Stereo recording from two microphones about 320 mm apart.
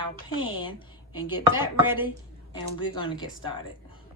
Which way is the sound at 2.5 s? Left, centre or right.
Centre.